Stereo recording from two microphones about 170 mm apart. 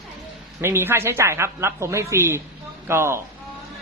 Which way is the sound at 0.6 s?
15° right (ahead or behind).